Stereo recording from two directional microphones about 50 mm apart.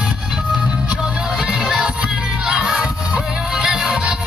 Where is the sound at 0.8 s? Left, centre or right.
Centre.